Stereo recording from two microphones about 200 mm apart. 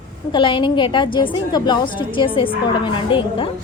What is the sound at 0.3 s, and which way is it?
A woman's voice, 25° left (ahead or behind).